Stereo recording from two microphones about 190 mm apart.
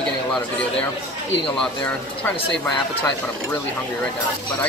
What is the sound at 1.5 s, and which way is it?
Speech, 5° left (ahead or behind).